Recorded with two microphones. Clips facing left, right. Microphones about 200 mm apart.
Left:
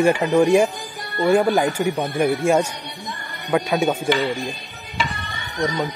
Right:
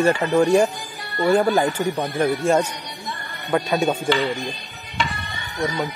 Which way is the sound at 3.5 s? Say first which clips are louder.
Left 1 dB; 10° left (ahead or behind).